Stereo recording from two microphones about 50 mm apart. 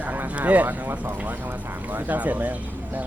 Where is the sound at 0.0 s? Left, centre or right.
Right.